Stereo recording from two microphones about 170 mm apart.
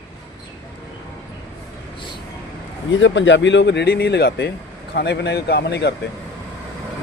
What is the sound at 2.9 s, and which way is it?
Speech, 90° left.